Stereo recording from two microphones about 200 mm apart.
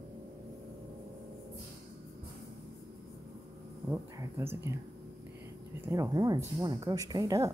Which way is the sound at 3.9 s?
15° right (ahead or behind).